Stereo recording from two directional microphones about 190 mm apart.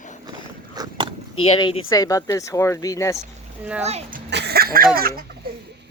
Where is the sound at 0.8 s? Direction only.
25° right (ahead or behind).